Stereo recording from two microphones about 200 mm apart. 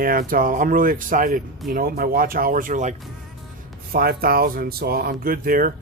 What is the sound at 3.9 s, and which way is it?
Speech, 50° right (ahead or behind).